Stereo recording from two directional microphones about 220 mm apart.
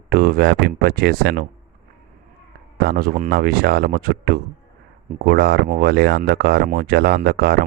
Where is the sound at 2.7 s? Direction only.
45° right (ahead or behind).